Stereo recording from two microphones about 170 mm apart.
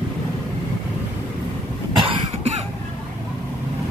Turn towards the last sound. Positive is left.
turn(degrees=-30)  # may be behind; listen again after turning